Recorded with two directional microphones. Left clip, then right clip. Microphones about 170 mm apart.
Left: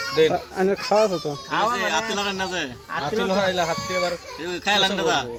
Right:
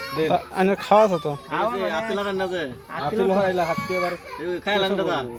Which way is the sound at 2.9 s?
25° left (ahead or behind).